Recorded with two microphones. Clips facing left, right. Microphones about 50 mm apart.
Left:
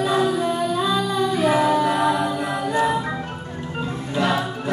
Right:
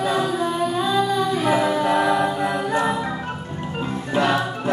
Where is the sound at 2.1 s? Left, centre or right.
Right.